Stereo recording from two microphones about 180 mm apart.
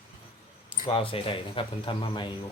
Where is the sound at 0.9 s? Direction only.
30° left (ahead or behind).